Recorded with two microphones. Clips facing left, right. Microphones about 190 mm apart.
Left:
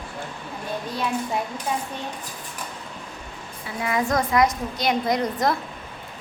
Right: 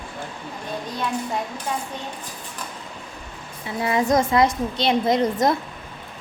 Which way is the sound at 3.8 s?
25° right (ahead or behind).